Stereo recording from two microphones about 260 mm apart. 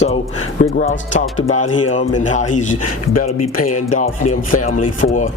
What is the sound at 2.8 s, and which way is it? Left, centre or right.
Speech, left.